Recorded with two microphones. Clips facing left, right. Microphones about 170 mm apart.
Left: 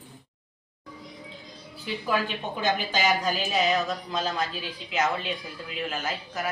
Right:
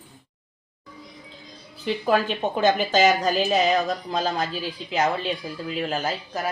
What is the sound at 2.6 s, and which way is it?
A woman's voice, 45° right (ahead or behind).